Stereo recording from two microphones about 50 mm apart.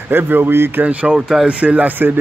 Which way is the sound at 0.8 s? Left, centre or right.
Right.